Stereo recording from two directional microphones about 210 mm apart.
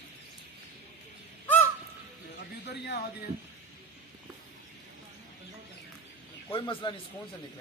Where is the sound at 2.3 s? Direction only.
50° left (ahead or behind).